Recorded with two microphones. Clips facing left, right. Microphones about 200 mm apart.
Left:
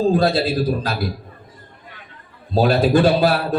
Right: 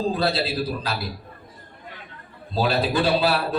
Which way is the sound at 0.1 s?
50° left (ahead or behind).